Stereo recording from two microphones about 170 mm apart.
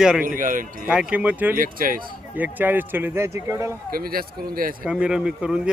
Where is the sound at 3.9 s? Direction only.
60° right (ahead or behind).